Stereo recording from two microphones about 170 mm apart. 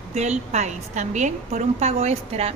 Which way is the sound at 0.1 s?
40° right (ahead or behind).